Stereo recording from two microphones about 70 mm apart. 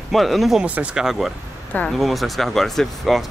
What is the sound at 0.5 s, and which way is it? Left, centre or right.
Speech, centre.